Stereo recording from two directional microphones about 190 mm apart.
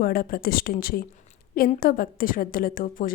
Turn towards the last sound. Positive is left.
turn(degrees=45)  # may be behind; listen again after turning